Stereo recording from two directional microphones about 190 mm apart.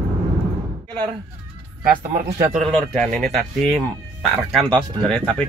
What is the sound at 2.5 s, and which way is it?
Speech, 5° left (ahead or behind).